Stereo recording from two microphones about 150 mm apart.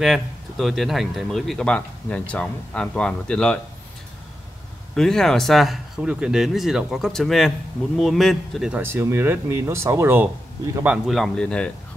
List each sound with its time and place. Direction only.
0.0 s speech: centre (ahead or behind)
4.9 s speech: 5° left (ahead or behind)
8.8 s speech: 15° right (ahead or behind); by 11.7 s 5° left (ahead or behind)